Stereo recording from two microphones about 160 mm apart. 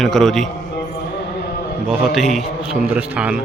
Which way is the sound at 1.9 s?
Centre (ahead or behind).